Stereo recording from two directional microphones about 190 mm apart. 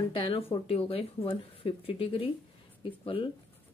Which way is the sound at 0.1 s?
30° left (ahead or behind).